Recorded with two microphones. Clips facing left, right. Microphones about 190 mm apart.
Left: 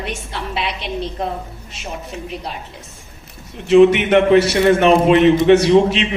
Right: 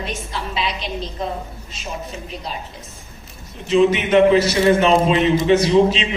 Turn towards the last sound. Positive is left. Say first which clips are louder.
# left 2 dB
turn(degrees=65)  # may be behind; listen again after turning